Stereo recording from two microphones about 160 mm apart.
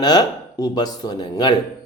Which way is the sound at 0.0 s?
25° left (ahead or behind).